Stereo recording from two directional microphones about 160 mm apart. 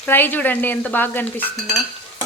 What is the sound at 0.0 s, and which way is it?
Speech, 15° left (ahead or behind).